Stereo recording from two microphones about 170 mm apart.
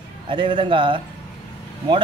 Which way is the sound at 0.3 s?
30° right (ahead or behind).